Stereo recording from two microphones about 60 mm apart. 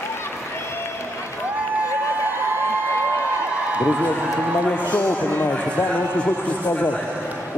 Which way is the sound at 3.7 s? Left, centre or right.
Right.